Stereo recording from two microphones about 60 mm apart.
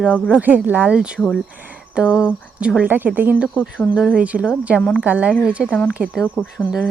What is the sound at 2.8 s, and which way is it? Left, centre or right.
Speech, right.